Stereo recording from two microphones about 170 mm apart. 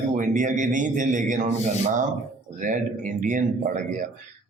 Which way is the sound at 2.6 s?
50° right (ahead or behind).